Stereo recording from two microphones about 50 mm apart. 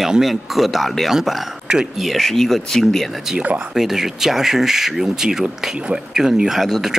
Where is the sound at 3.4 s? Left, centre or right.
Right.